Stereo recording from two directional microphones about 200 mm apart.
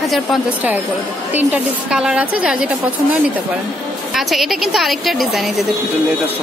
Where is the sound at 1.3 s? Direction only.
10° right (ahead or behind).